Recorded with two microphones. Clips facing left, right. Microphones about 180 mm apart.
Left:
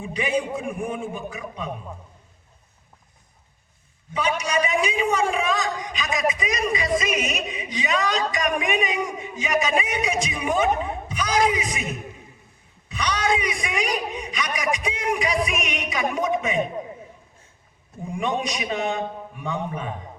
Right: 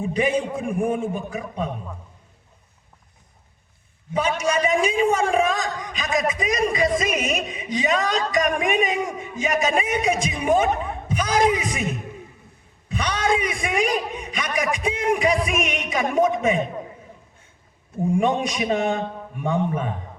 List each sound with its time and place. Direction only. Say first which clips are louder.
0.0 s a man's voice: right 3 dB; 50° right (ahead or behind)
4.4 s a man's voice: right 4 dB; 50° right (ahead or behind)
12.9 s a sound: right 1 dB; 50° right (ahead or behind)
15.4 s speech: right 3 dB; 50° right (ahead or behind)
18.1 s a man's voice: right 4 dB; 50° right (ahead or behind)